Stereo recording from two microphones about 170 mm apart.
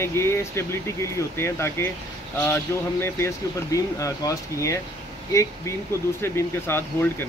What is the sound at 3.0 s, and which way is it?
Speech, 15° left (ahead or behind).